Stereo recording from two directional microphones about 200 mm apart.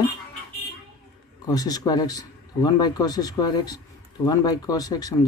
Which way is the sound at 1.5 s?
20° left (ahead or behind).